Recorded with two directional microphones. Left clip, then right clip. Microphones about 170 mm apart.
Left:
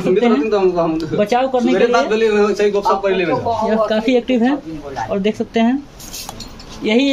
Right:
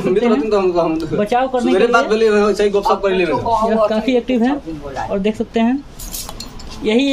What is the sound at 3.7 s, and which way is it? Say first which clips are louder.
Speech: even; 10° right (ahead or behind).